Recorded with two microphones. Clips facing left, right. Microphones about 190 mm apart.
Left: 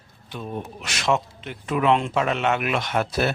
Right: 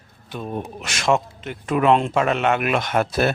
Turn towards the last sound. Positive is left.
turn(degrees=-50)  # may be behind; listen again after turning